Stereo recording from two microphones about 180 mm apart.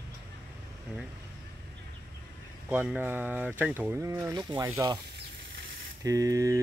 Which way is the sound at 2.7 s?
10° right (ahead or behind).